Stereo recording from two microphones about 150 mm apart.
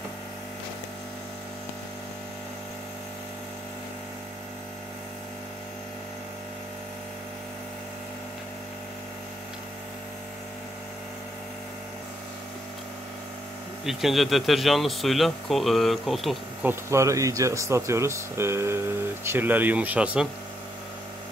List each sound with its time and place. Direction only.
13.8 s speech: centre (ahead or behind)
16.6 s speech: 20° right (ahead or behind)